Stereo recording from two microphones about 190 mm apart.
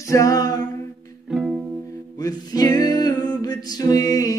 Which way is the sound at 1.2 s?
5° right (ahead or behind).